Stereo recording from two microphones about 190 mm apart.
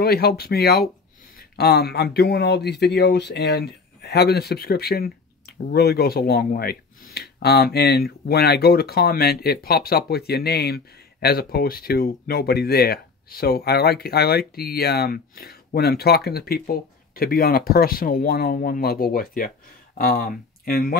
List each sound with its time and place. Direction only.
0.0 s speech: 55° left (ahead or behind)